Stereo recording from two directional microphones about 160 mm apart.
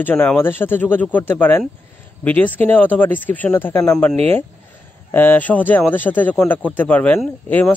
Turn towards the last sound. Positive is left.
turn(degrees=10)  # may be behind; listen again after turning